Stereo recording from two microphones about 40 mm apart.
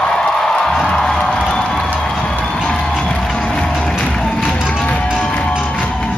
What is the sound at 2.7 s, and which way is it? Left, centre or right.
Music, left.